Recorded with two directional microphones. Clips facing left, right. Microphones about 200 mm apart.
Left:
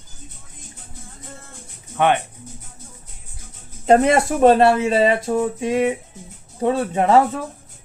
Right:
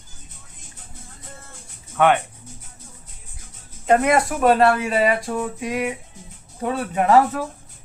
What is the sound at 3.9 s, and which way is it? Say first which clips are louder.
Speech: left 3 dB; 30° left (ahead or behind).